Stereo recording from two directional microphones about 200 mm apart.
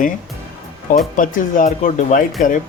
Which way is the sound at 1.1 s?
40° left (ahead or behind).